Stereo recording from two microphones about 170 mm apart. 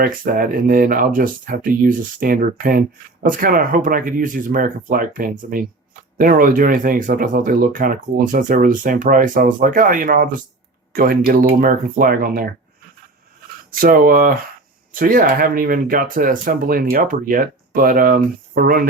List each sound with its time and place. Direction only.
0.0 s speech: 55° right (ahead or behind)
13.7 s speech: 55° right (ahead or behind)